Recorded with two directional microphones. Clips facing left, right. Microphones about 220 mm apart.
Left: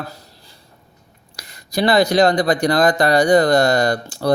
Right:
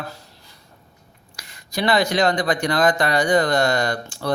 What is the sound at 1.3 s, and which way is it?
Speech, 40° left (ahead or behind).